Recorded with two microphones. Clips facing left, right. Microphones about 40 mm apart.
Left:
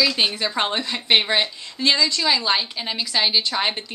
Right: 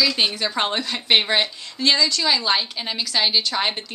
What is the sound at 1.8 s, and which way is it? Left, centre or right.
A woman's voice, centre.